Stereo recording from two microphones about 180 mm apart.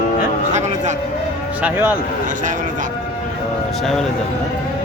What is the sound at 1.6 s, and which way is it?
Speech, 10° right (ahead or behind).